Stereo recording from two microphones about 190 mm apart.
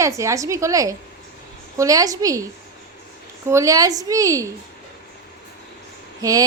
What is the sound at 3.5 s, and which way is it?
Speech, 15° right (ahead or behind).